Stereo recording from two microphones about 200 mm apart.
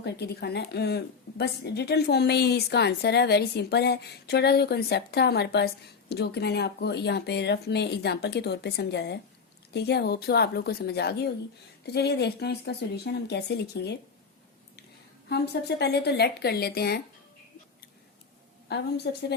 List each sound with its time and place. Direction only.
0.0 s a woman's voice: 55° left (ahead or behind)
15.3 s a woman's voice: 55° left (ahead or behind)
18.7 s a woman's voice: 55° left (ahead or behind)